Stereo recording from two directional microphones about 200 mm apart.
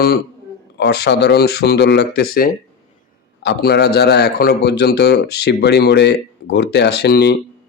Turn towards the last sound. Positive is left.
turn(degrees=55)  # may be behind; listen again after turning